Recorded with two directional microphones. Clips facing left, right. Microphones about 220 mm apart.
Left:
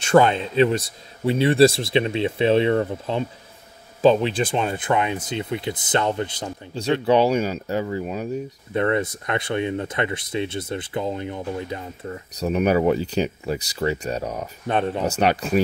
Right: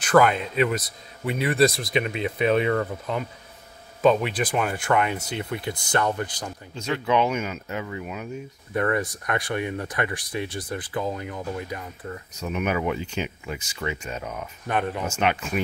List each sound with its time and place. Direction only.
0.0 s speech: 25° left (ahead or behind)
8.7 s speech: 25° left (ahead or behind)